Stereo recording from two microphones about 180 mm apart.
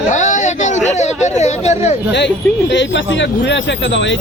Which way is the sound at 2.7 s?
85° left.